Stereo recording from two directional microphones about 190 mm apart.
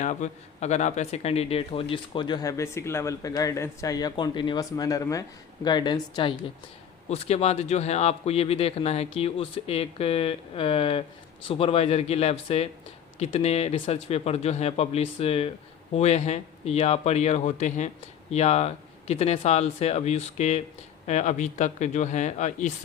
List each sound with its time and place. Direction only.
0.0 s speech: 40° left (ahead or behind)